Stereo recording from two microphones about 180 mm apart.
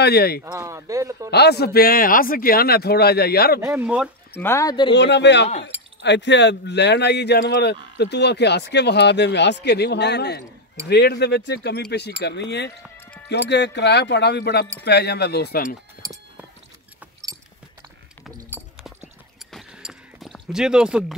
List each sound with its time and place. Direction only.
0.0 s a man's voice: 60° left (ahead or behind)
0.4 s speech: 15° right (ahead or behind)
1.3 s a man's voice: 65° left (ahead or behind)
3.6 s speech: 10° right (ahead or behind)
4.4 s speech: 15° left (ahead or behind)
4.9 s speech: 75° left (ahead or behind)
12.9 s music: 10° left (ahead or behind)
13.3 s a man's voice: 70° left (ahead or behind)
16.0 s a sound: 20° right (ahead or behind)
18.2 s clip-clop: centre (ahead or behind)
19.5 s a sound: centre (ahead or behind)